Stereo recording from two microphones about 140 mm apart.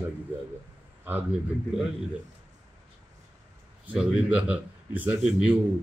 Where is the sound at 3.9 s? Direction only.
10° right (ahead or behind).